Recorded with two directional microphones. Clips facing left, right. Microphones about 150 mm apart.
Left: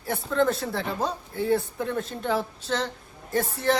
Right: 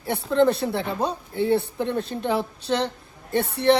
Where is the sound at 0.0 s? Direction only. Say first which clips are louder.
Right 4 dB; 25° right (ahead or behind).